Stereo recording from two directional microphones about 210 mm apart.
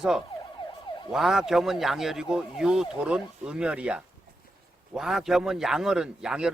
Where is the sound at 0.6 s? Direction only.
20° left (ahead or behind).